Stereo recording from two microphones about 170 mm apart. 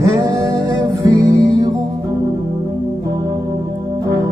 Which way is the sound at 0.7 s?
20° right (ahead or behind).